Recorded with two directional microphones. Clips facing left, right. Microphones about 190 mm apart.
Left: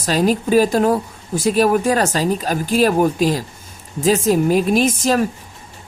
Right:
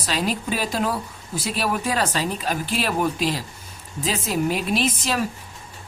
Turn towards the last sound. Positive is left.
turn(degrees=45)  # may be behind; listen again after turning